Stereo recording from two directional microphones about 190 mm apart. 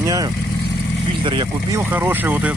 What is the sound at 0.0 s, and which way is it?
Speech, 20° right (ahead or behind).